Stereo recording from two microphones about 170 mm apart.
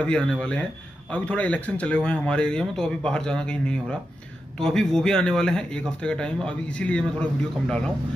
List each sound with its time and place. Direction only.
0.0 s speech: 5° left (ahead or behind)